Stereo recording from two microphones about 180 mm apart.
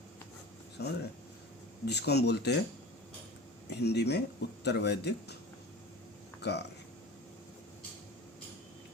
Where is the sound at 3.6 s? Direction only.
65° left (ahead or behind).